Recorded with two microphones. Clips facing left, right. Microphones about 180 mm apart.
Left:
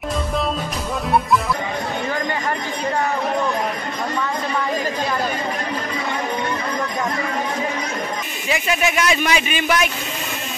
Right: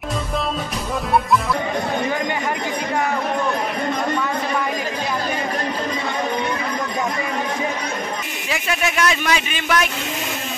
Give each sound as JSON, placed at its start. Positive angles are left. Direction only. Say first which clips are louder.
{"t": 8.5, "sound": "a man's voice", "louder": "left 3 dB", "side_deg": 5}